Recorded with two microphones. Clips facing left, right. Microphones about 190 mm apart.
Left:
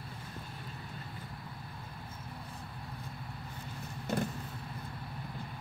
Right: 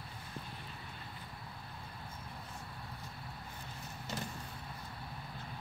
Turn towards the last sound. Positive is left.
turn(degrees=55)  # may be behind; listen again after turning